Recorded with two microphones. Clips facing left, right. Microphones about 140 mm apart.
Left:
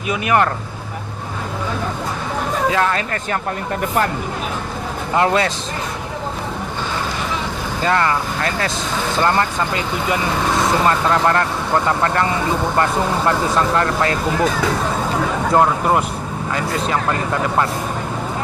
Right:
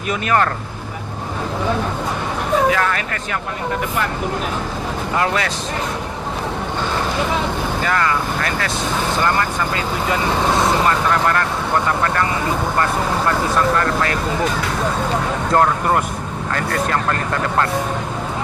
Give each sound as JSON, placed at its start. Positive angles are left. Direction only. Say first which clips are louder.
{"t": 0.1, "sound": "speech", "louder": "left 1 dB", "side_deg": 15}
{"t": 2.6, "sound": "speech", "louder": "left 1 dB", "side_deg": 25}
{"t": 5.1, "sound": "speech", "louder": "left 4 dB", "side_deg": 30}
{"t": 7.9, "sound": "speech", "louder": "left 3 dB", "side_deg": 25}
{"t": 10.8, "sound": "speech", "louder": "left 1 dB", "side_deg": 25}
{"t": 13.7, "sound": "speech", "louder": "left 1 dB", "side_deg": 25}
{"t": 15.5, "sound": "speech", "louder": "left 1 dB", "side_deg": 10}